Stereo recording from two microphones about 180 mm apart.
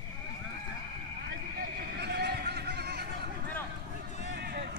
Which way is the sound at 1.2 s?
65° right (ahead or behind).